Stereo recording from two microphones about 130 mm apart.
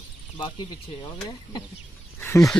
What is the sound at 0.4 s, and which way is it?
Speech, 35° left (ahead or behind).